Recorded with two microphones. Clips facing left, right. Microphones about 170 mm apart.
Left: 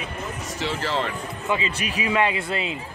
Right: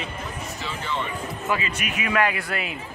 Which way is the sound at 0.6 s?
85° left.